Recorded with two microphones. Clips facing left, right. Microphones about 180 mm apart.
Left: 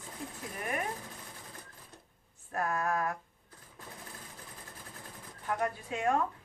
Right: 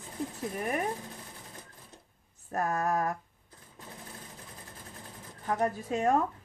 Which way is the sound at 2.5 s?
40° right (ahead or behind).